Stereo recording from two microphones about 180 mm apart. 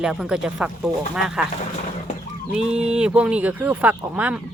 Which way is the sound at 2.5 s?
5° right (ahead or behind).